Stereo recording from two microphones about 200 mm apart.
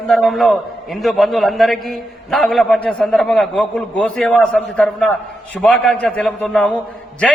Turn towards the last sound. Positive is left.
turn(degrees=5)  # may be behind; listen again after turning